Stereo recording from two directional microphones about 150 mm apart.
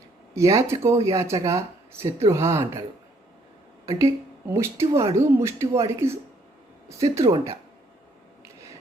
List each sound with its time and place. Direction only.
0.3 s speech: 20° right (ahead or behind)
3.8 s speech: 20° right (ahead or behind)